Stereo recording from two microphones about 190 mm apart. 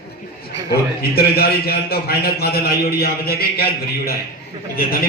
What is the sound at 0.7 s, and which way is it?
A man's voice, 55° left (ahead or behind).